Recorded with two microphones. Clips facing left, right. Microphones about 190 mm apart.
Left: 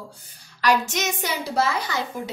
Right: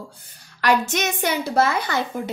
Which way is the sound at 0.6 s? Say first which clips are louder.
Right 2 dB; 60° right (ahead or behind).